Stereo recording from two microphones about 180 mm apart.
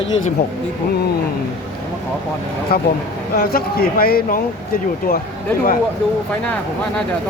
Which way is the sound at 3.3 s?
55° left (ahead or behind).